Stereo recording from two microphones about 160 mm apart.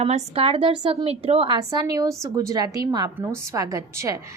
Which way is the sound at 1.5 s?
25° right (ahead or behind).